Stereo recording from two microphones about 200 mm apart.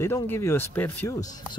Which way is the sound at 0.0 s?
15° left (ahead or behind).